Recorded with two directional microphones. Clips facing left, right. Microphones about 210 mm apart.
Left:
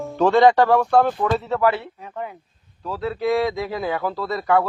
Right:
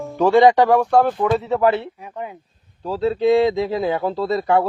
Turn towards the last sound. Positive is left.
turn(degrees=-25)  # may be behind; listen again after turning